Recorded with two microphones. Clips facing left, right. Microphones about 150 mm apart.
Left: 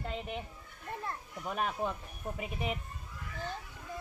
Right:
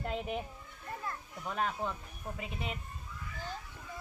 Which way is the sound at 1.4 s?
10° left (ahead or behind).